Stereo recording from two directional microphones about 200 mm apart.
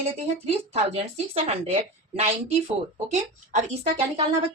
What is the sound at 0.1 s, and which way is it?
Speech, 30° right (ahead or behind).